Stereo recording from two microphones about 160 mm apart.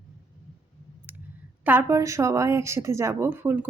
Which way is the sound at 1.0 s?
10° right (ahead or behind).